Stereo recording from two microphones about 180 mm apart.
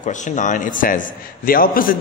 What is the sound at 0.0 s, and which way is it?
A man's voice, 45° left (ahead or behind).